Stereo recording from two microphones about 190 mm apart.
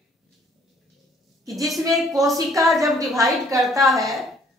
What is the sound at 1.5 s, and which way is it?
Speech, centre (ahead or behind).